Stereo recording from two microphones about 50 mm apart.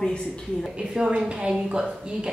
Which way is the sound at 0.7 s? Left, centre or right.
Centre.